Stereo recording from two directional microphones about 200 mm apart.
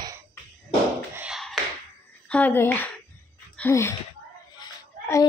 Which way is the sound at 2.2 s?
5° left (ahead or behind).